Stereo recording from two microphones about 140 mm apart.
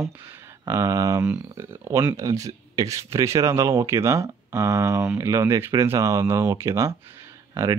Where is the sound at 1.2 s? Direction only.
10° right (ahead or behind).